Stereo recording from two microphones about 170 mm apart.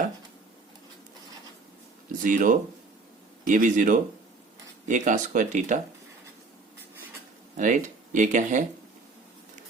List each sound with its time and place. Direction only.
2.2 s speech: 50° right (ahead or behind)
7.5 s speech: 50° right (ahead or behind)